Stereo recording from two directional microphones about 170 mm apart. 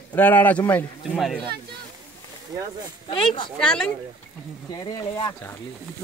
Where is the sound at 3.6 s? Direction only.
5° left (ahead or behind).